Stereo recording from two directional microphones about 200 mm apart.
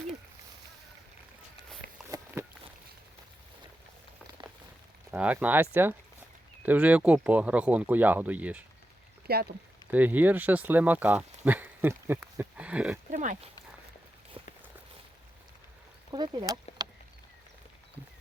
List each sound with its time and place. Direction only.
2.0 s walk: 15° right (ahead or behind)
5.1 s speech: 5° right (ahead or behind)
9.2 s speech: 50° right (ahead or behind)
9.9 s speech: 10° right (ahead or behind)
13.1 s speech: 40° right (ahead or behind)
14.4 s walk: 25° right (ahead or behind)
16.1 s speech: 20° right (ahead or behind)